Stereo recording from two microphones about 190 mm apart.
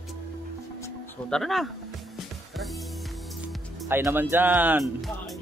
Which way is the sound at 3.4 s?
10° right (ahead or behind).